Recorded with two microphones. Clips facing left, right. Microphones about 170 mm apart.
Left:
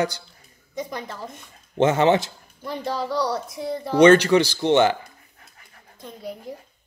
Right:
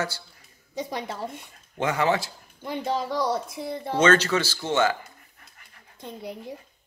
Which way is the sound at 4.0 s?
15° left (ahead or behind).